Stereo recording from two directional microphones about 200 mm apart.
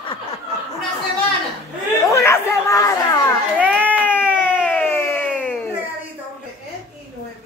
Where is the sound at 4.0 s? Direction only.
10° left (ahead or behind).